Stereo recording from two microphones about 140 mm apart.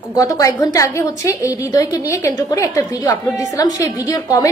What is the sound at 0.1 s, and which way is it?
A woman's voice, 25° left (ahead or behind).